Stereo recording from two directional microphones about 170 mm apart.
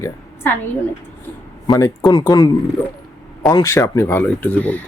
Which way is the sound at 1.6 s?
20° left (ahead or behind).